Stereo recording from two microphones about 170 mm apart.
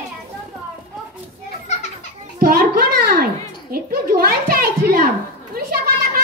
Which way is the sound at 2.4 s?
65° right (ahead or behind).